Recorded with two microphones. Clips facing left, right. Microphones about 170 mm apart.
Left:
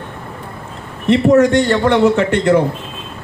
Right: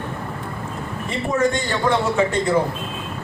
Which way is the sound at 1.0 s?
70° left (ahead or behind).